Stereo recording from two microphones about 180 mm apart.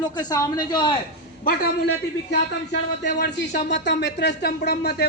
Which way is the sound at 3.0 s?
70° left (ahead or behind).